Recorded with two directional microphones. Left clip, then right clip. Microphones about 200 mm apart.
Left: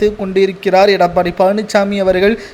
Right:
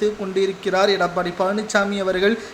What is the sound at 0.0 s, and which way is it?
Speech, 30° left (ahead or behind).